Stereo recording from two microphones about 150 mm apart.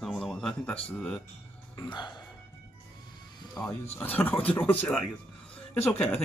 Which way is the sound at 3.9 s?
10° left (ahead or behind).